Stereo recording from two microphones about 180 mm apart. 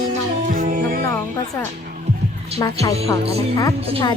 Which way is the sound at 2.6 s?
20° left (ahead or behind).